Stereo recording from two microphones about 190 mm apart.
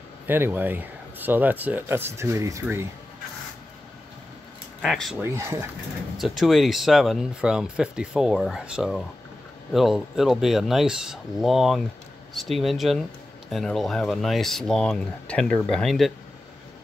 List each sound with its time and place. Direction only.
0.3 s speech: 10° right (ahead or behind)
4.8 s speech: centre (ahead or behind)
5.2 s speech: 15° right (ahead or behind)
6.1 s speech: centre (ahead or behind)